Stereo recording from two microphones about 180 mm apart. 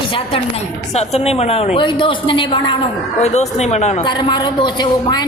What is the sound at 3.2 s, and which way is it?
Speech, 40° left (ahead or behind).